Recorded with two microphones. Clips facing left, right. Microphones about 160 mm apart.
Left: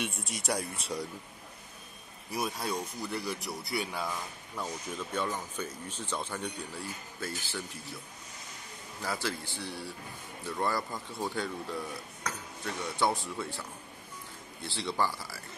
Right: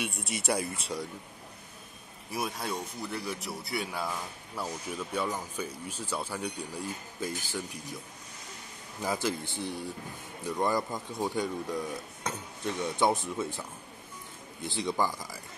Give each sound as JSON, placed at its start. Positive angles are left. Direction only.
{"t": 0.0, "sound": "speech", "side_deg": 0}
{"t": 2.3, "sound": "speech", "side_deg": 0}
{"t": 9.0, "sound": "speech", "side_deg": -20}